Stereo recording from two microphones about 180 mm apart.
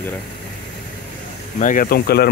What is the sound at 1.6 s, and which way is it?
Speech, 50° left (ahead or behind).